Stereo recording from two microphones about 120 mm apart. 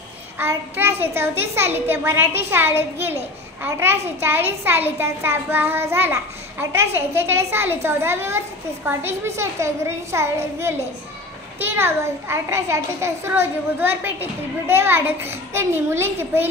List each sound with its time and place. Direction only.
0.4 s a child's voice: 20° right (ahead or behind)